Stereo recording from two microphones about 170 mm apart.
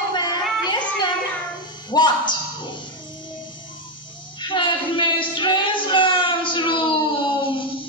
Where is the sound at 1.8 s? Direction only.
25° left (ahead or behind).